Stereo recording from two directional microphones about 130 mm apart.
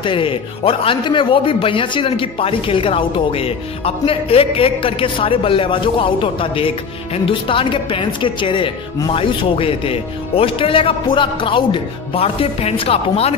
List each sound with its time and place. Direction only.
0.0 s a man's voice: 40° left (ahead or behind)